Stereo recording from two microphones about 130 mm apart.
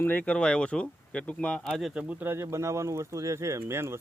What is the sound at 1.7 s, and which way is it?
Speech, 5° right (ahead or behind).